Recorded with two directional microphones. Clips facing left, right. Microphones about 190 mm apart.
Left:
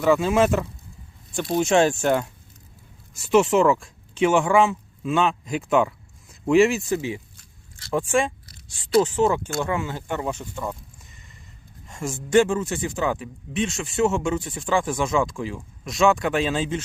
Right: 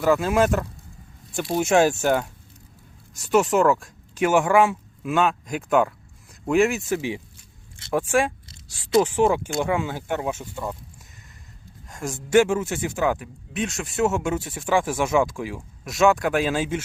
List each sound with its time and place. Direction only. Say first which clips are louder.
0.0 s speech: left 1 dB; centre (ahead or behind)
8.4 s a sound: right 1 dB; 20° right (ahead or behind)
9.0 s speech: right 1 dB; 10° right (ahead or behind)
11.9 s speech: even; centre (ahead or behind)